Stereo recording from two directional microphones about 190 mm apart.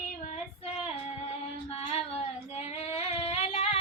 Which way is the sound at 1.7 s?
30° left (ahead or behind).